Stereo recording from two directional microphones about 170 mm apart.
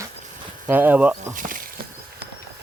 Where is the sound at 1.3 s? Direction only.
50° right (ahead or behind).